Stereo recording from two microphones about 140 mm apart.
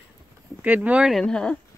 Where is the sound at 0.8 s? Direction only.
5° right (ahead or behind).